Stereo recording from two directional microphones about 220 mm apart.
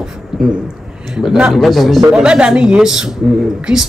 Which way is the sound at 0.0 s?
5° right (ahead or behind).